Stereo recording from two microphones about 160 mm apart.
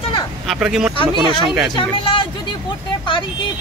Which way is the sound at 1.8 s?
30° left (ahead or behind).